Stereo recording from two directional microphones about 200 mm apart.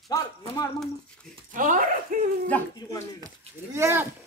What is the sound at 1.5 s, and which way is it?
Speech, 40° right (ahead or behind).